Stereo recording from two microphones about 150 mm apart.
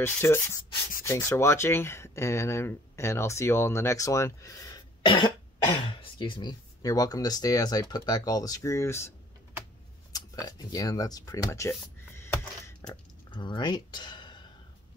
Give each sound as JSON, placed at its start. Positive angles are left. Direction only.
{"t": 0.0, "sound": "speech", "side_deg": 15}
{"t": 10.1, "sound": "speech", "side_deg": 25}
{"t": 12.2, "sound": "a sound", "side_deg": 15}
{"t": 13.3, "sound": "speech", "side_deg": 30}